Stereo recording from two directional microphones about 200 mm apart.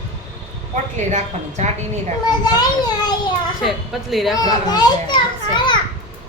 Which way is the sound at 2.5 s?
20° left (ahead or behind).